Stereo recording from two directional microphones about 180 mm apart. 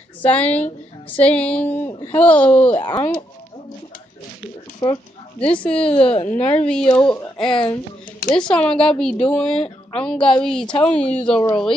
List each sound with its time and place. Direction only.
0.2 s a sound: 10° left (ahead or behind)
2.8 s speech: 20° left (ahead or behind)
4.8 s speech: 25° left (ahead or behind)
5.7 s a woman's voice: 5° left (ahead or behind)
6.0 s a woman's voice: 35° left (ahead or behind)
6.5 s a woman's voice: 5° left (ahead or behind)
11.2 s a sound: 5° left (ahead or behind)